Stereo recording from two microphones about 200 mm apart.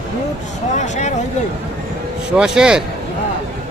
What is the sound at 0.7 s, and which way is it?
Speech, 35° left (ahead or behind).